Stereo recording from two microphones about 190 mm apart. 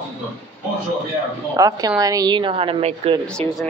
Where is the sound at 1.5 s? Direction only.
20° right (ahead or behind).